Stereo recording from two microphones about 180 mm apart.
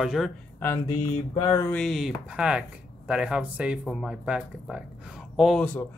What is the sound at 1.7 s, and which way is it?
Speech, centre (ahead or behind).